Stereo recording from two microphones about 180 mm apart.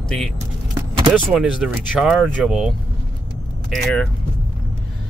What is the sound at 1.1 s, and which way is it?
Speech, centre (ahead or behind).